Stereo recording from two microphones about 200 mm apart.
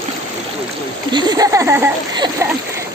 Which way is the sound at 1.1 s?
20° right (ahead or behind).